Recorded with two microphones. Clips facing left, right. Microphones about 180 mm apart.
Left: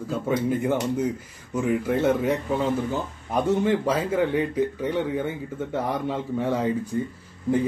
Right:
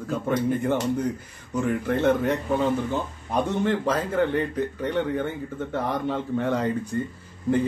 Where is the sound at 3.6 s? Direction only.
10° left (ahead or behind).